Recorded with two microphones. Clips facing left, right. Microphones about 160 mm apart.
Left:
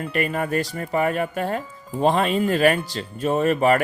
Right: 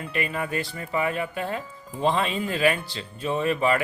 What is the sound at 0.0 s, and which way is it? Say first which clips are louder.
Speech: left 5 dB; 45° left (ahead or behind).